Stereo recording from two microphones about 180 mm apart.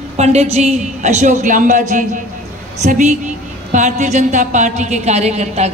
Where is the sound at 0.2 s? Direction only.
35° right (ahead or behind).